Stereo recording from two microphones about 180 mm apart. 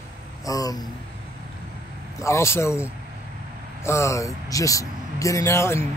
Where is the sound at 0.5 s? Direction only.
20° left (ahead or behind).